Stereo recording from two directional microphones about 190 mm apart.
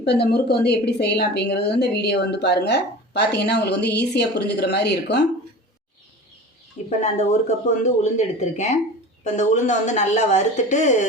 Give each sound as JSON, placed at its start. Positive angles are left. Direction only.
{"t": 0.0, "sound": "a woman's voice", "side_deg": 60}
{"t": 7.0, "sound": "speech", "side_deg": 35}